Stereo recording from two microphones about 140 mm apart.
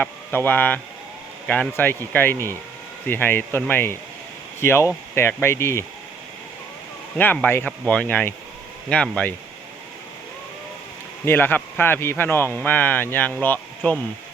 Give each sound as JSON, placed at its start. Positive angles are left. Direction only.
{"t": 0.0, "sound": "speech", "side_deg": 15}
{"t": 7.2, "sound": "speech", "side_deg": 15}
{"t": 11.3, "sound": "speech", "side_deg": 15}